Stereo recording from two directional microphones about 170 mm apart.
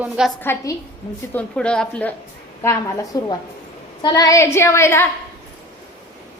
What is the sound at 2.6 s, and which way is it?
A woman's voice, 20° left (ahead or behind).